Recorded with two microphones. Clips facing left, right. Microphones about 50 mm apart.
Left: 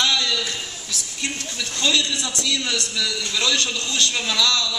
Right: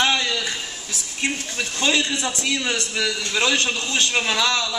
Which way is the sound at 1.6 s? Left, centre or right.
Right.